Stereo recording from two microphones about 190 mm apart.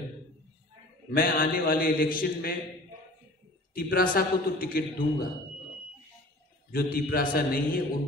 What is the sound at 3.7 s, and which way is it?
A man's voice, 50° left (ahead or behind).